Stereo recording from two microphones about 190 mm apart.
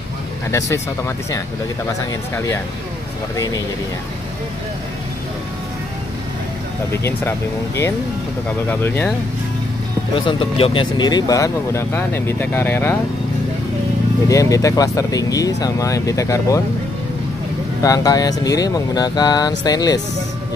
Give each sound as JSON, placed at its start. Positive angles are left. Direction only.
{"t": 0.5, "sound": "speech", "side_deg": 15}
{"t": 6.9, "sound": "speech", "side_deg": 15}
{"t": 10.1, "sound": "speech", "side_deg": 30}
{"t": 14.3, "sound": "speech", "side_deg": 15}
{"t": 17.8, "sound": "speech", "side_deg": 20}